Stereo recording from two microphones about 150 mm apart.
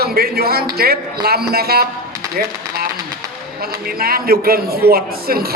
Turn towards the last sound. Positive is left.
turn(degrees=-90)